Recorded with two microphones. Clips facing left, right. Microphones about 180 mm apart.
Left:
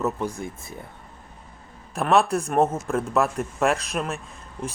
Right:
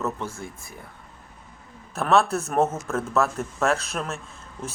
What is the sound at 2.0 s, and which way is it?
Speech, centre (ahead or behind).